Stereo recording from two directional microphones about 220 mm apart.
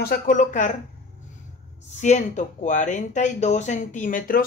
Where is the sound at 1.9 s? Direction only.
30° left (ahead or behind).